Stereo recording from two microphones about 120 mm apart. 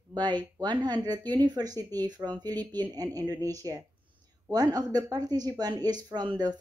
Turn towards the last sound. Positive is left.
turn(degrees=-35)  # may be behind; listen again after turning